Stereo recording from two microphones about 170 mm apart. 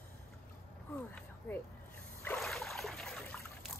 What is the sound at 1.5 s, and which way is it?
Speech, 10° left (ahead or behind).